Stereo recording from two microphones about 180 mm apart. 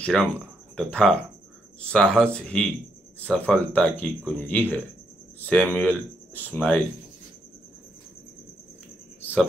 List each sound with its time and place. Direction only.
0.0 s speech: 5° left (ahead or behind)